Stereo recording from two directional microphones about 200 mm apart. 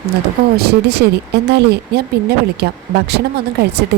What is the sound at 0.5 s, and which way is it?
Speech, 55° right (ahead or behind).